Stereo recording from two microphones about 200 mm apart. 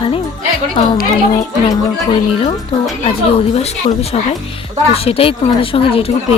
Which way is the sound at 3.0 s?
30° left (ahead or behind).